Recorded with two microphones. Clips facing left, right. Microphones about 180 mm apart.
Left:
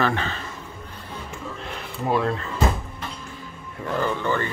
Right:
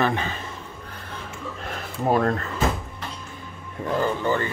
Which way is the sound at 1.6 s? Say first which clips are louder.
Right 4 dB; 45° right (ahead or behind).